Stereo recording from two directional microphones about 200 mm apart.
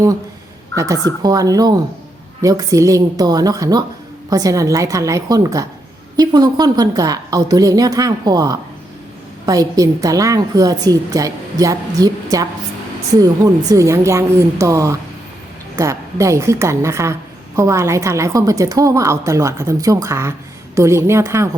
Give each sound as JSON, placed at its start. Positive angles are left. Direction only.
{"t": 1.2, "sound": "a woman's voice", "side_deg": -20}